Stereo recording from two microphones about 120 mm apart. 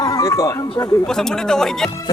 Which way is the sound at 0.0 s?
30° left (ahead or behind).